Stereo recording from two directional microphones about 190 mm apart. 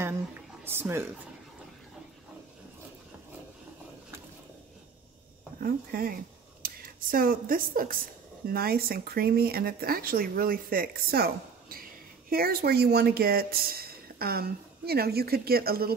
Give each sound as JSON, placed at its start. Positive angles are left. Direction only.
{"t": 0.7, "sound": "speech", "side_deg": -10}
{"t": 5.6, "sound": "speech", "side_deg": -50}